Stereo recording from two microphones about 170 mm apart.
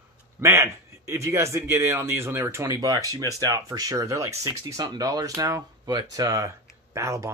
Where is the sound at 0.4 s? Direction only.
15° right (ahead or behind).